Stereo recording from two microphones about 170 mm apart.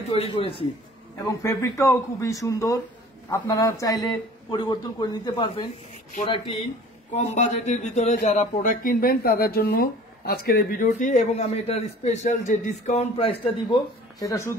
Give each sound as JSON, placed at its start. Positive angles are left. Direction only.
{"t": 0.1, "sound": "a man's voice", "side_deg": 35}
{"t": 1.2, "sound": "a man's voice", "side_deg": 20}
{"t": 7.2, "sound": "a man's voice", "side_deg": 40}
{"t": 14.2, "sound": "speech", "side_deg": 15}